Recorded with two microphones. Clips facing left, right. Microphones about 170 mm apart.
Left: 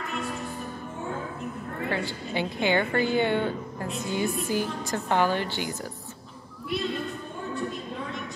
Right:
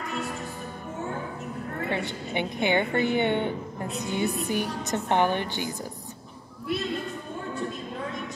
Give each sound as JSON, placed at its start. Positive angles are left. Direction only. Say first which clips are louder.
{"t": 1.9, "sound": "a woman's voice", "louder": "left 1 dB", "side_deg": -20}